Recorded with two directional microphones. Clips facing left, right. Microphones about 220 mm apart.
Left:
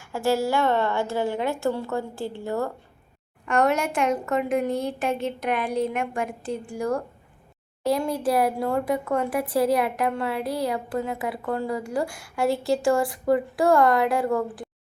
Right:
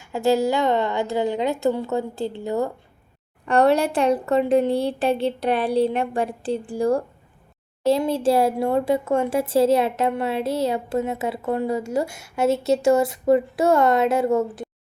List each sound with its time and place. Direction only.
0.0 s speech: 20° right (ahead or behind)
3.4 s a woman's voice: 35° right (ahead or behind)